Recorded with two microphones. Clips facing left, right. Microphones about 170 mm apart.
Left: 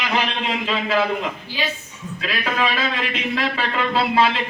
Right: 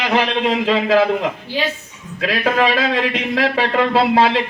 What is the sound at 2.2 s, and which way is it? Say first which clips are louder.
A man's voice: right 7 dB; 65° right (ahead or behind).